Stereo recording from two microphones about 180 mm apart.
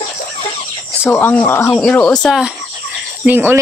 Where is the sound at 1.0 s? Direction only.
10° left (ahead or behind).